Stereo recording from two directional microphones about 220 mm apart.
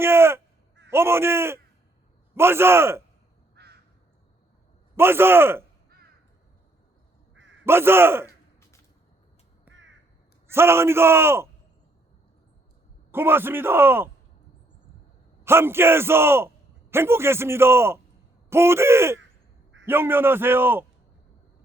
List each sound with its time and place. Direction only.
0.0 s a man's voice: 10° right (ahead or behind)
3.5 s crow: 50° right (ahead or behind)
4.9 s a man's voice: 10° right (ahead or behind)
7.6 s a man's voice: 10° right (ahead or behind)
9.7 s crow: 10° right (ahead or behind)
10.4 s a man's voice: 10° right (ahead or behind)
13.1 s a man's voice: 10° right (ahead or behind)
15.4 s a man's voice: 10° right (ahead or behind)